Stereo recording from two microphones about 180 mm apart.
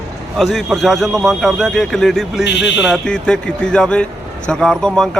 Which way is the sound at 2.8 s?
Centre (ahead or behind).